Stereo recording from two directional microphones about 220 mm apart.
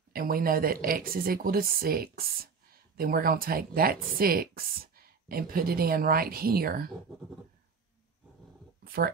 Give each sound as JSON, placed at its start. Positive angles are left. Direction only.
{"t": 0.1, "sound": "speech", "side_deg": -40}
{"t": 8.8, "sound": "speech", "side_deg": -45}